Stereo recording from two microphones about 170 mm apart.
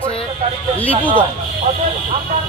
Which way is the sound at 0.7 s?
10° left (ahead or behind).